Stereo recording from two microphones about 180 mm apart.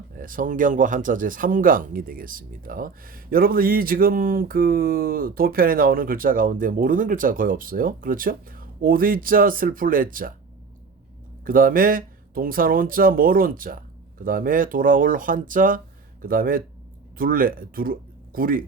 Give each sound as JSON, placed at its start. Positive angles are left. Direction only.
{"t": 0.2, "sound": "speech", "side_deg": -50}
{"t": 11.4, "sound": "speech", "side_deg": -50}